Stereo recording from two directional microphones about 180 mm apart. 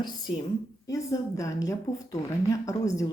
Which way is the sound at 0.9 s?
20° left (ahead or behind).